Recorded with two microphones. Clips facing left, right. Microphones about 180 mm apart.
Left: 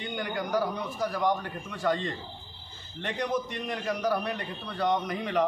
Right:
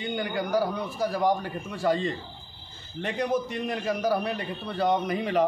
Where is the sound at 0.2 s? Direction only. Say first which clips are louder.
Right 1 dB; 10° right (ahead or behind).